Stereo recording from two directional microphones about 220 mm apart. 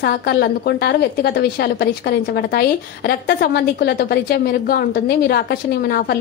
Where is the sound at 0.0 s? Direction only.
45° left (ahead or behind).